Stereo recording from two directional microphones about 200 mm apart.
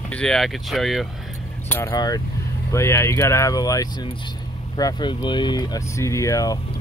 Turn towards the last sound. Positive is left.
turn(degrees=15)  # may be behind; listen again after turning